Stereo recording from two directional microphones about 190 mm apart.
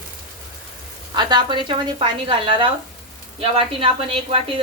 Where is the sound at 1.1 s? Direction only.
25° right (ahead or behind).